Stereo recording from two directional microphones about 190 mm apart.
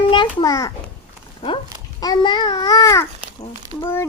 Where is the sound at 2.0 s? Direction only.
20° left (ahead or behind).